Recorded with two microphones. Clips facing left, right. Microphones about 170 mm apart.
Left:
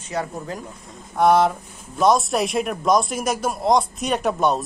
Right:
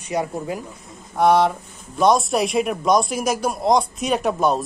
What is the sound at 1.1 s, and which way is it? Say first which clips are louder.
Speech: even; centre (ahead or behind).